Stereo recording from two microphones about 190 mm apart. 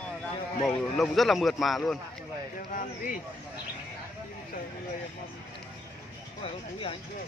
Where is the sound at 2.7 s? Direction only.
45° left (ahead or behind).